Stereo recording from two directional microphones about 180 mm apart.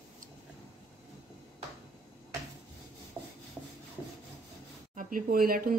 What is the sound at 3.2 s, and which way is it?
Rub, 15° right (ahead or behind).